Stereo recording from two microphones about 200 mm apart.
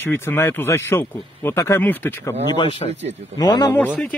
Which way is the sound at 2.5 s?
25° left (ahead or behind).